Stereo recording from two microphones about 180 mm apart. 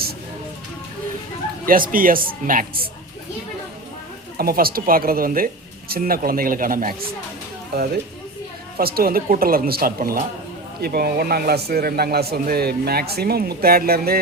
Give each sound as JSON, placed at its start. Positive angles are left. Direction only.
{"t": 1.6, "sound": "speech", "side_deg": -50}
{"t": 4.4, "sound": "speech", "side_deg": -55}
{"t": 8.8, "sound": "a man's voice", "side_deg": -55}